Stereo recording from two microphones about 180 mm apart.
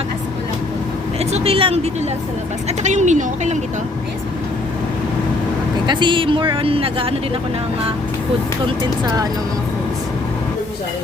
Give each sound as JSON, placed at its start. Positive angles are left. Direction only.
{"t": 1.2, "sound": "a woman's voice", "side_deg": -35}
{"t": 5.8, "sound": "speech", "side_deg": -25}
{"t": 8.6, "sound": "speech", "side_deg": -20}